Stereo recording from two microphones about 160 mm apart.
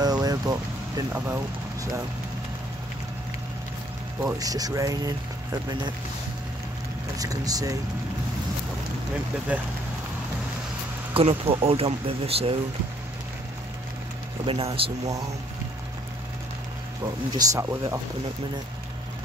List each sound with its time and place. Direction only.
0.0 s vehicle: 25° right (ahead or behind)
1.1 s speech: 15° right (ahead or behind)
4.4 s speech: 25° right (ahead or behind)
7.2 s speech: 20° right (ahead or behind)
9.5 s speech: 10° right (ahead or behind)
11.1 s speech: 35° right (ahead or behind)
14.4 s speech: 35° right (ahead or behind)
17.0 s speech: 20° right (ahead or behind)